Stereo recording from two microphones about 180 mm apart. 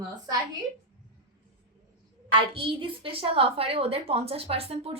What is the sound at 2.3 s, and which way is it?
A woman's voice, 30° right (ahead or behind).